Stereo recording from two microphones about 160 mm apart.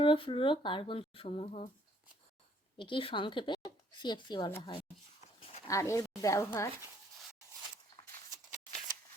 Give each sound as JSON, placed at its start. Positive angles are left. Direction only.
{"t": 0.0, "sound": "speech", "side_deg": 35}
{"t": 2.7, "sound": "speech", "side_deg": 30}
{"t": 5.6, "sound": "speech", "side_deg": 20}